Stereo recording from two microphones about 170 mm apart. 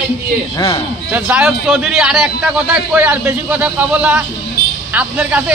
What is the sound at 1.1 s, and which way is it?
A man's voice, 5° right (ahead or behind).